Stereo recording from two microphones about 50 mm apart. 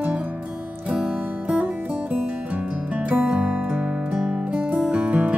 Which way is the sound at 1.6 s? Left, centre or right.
Right.